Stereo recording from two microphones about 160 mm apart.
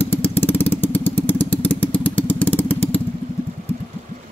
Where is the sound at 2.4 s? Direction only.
35° left (ahead or behind).